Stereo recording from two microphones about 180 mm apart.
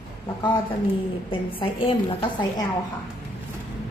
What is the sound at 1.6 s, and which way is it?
Speech, 30° left (ahead or behind).